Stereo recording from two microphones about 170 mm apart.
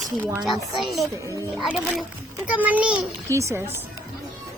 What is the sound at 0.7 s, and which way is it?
A child's voice, centre (ahead or behind).